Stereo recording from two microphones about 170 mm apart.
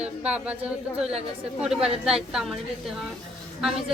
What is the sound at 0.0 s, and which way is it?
Speech, 5° right (ahead or behind).